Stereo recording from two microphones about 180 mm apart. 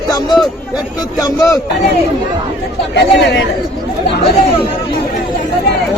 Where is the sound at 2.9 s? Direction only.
75° left (ahead or behind).